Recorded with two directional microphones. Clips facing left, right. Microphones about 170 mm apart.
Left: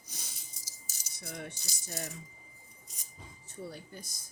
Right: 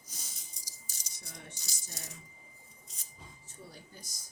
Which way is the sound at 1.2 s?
65° left (ahead or behind).